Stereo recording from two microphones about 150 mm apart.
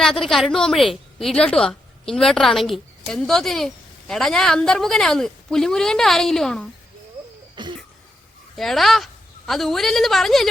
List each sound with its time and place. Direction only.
0.0 s a woman's voice: 5° left (ahead or behind)
8.5 s a woman's voice: centre (ahead or behind)